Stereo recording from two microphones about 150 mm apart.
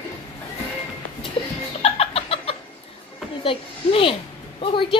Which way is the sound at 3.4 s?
40° left (ahead or behind).